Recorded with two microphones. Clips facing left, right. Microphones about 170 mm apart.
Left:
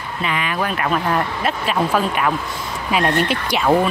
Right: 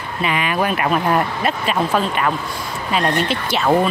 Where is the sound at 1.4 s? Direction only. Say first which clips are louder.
Even; 5° left (ahead or behind).